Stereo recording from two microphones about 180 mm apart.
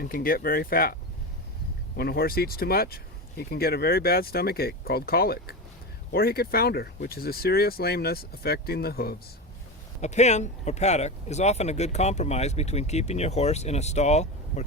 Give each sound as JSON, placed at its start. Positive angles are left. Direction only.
{"t": 0.0, "sound": "speech", "side_deg": 55}
{"t": 2.0, "sound": "speech", "side_deg": 60}
{"t": 10.0, "sound": "speech", "side_deg": 40}